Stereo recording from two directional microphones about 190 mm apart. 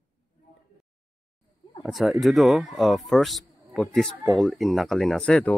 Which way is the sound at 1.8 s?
Centre (ahead or behind).